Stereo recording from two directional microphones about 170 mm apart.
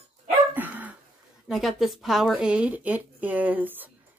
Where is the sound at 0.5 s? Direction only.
10° right (ahead or behind).